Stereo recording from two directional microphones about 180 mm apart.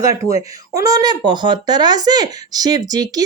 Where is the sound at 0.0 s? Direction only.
15° right (ahead or behind).